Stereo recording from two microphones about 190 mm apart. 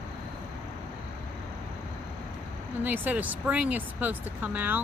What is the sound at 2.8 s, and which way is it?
Speech, 10° right (ahead or behind).